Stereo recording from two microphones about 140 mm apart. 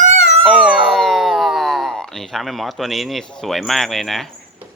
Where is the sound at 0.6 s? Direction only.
10° right (ahead or behind).